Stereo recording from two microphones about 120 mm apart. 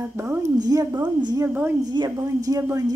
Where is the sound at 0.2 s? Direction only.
25° right (ahead or behind).